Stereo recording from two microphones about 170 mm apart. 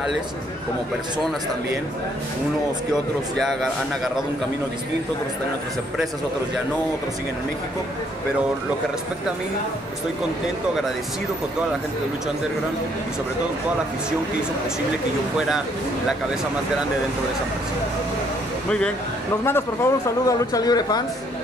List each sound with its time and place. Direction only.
19.4 s speech: 15° left (ahead or behind)